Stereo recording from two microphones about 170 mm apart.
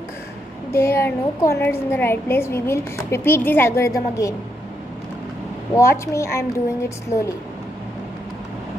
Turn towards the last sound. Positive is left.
turn(degrees=15)  # may be behind; listen again after turning